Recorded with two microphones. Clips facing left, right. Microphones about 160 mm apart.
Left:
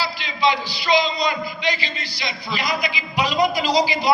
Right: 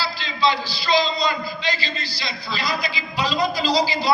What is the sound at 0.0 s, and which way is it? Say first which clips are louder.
A man's voice: left 1 dB; 15° left (ahead or behind).